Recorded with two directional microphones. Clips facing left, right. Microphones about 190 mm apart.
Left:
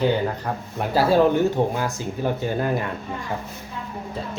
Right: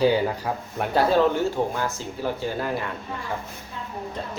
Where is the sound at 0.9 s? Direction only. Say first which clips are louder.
Left 2 dB; 10° left (ahead or behind).